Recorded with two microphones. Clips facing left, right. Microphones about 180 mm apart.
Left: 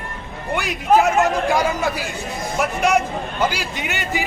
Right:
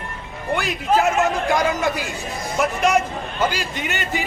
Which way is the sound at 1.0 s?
5° left (ahead or behind).